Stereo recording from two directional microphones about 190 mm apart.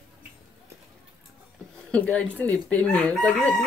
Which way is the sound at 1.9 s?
5° left (ahead or behind).